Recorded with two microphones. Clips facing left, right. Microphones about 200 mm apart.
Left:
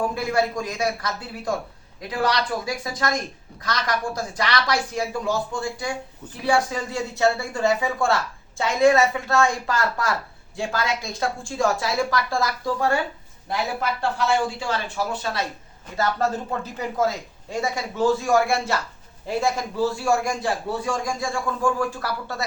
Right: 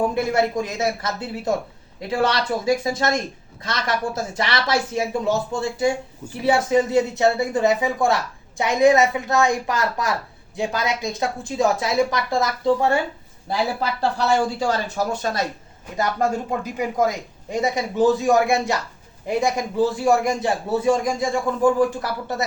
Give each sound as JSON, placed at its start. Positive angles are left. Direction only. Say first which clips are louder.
{"t": 0.0, "sound": "speech", "louder": "right 3 dB", "side_deg": -25}
{"t": 14.0, "sound": "speech", "louder": "right 3 dB", "side_deg": -40}
{"t": 16.0, "sound": "speech", "louder": "right 2 dB", "side_deg": -15}